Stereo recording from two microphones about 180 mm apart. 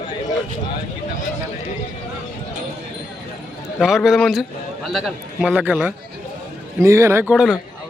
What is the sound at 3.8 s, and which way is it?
A man's voice, centre (ahead or behind).